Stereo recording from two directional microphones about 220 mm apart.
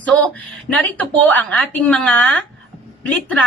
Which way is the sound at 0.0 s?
5° left (ahead or behind).